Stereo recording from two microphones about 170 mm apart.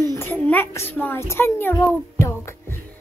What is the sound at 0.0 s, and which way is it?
A child's voice, 15° left (ahead or behind).